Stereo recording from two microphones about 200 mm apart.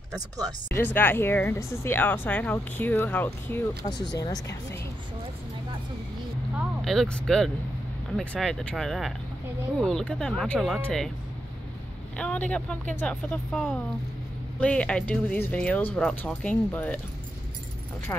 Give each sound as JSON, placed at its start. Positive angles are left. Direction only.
{"t": 0.7, "sound": "speech", "side_deg": 10}
{"t": 6.8, "sound": "speech", "side_deg": 0}
{"t": 12.2, "sound": "speech", "side_deg": 5}